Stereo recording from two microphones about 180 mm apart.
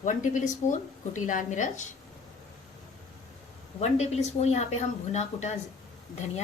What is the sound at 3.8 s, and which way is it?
A woman's voice, 40° left (ahead or behind).